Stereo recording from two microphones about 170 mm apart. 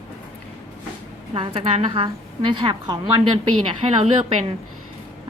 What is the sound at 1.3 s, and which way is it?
A woman's voice, 35° right (ahead or behind).